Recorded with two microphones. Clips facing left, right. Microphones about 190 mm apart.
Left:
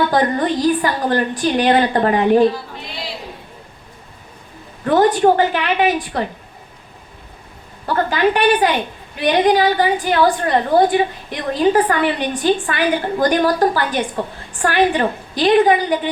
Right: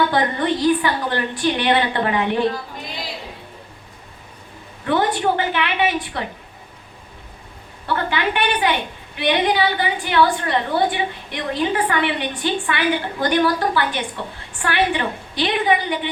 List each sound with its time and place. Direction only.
0.1 s a woman's voice: 40° left (ahead or behind)
4.9 s a woman's voice: 40° left (ahead or behind)
7.9 s a woman's voice: 40° left (ahead or behind)